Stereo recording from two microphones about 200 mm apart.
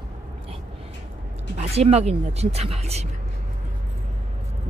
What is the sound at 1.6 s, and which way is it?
Speech, 30° right (ahead or behind).